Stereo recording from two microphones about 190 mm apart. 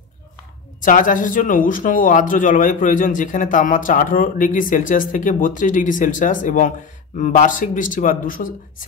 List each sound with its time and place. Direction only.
0.8 s speech: 45° left (ahead or behind)